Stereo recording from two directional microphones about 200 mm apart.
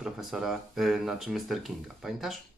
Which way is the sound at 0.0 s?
Centre (ahead or behind).